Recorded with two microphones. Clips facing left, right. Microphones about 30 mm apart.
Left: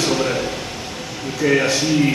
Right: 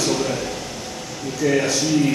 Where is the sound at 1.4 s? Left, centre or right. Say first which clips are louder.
Left 2 dB; left.